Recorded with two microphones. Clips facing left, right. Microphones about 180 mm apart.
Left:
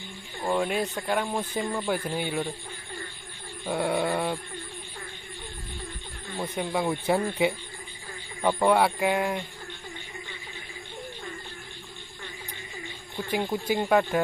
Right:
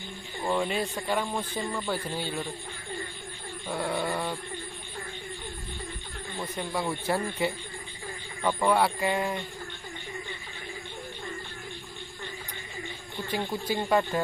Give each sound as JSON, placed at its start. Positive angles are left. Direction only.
{"t": 0.4, "sound": "speech", "side_deg": 5}
{"t": 3.6, "sound": "a sound", "side_deg": 20}
{"t": 6.3, "sound": "speech", "side_deg": 15}
{"t": 8.4, "sound": "speech", "side_deg": 10}
{"t": 8.8, "sound": "speech", "side_deg": 0}
{"t": 13.3, "sound": "speech", "side_deg": 10}